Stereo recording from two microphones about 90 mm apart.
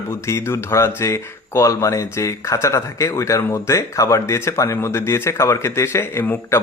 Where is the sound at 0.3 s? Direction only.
30° left (ahead or behind).